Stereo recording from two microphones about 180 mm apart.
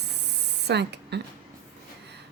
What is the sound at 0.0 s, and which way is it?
Spray, 70° right (ahead or behind).